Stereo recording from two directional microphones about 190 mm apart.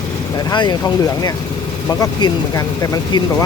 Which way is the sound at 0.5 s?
25° left (ahead or behind).